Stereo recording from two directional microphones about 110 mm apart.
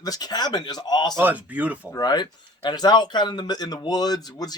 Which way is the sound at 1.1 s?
15° right (ahead or behind).